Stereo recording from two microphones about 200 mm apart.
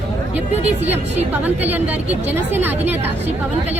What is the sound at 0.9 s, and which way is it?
A woman's voice, 10° right (ahead or behind).